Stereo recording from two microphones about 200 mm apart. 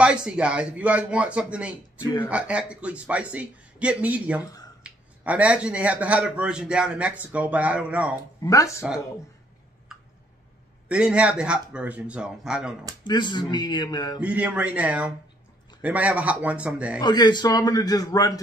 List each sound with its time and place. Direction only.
0.0 s a man's voice: 5° right (ahead or behind)
2.0 s speech: 20° left (ahead or behind)
2.2 s a man's voice: 5° right (ahead or behind)
8.2 s speech: 15° left (ahead or behind)
10.9 s a man's voice: 5° right (ahead or behind)
13.0 s a man's voice: 20° left (ahead or behind)
14.2 s a man's voice: 5° right (ahead or behind)
17.0 s a man's voice: 20° left (ahead or behind)